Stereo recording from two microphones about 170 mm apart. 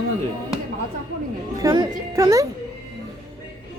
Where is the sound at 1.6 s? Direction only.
20° right (ahead or behind).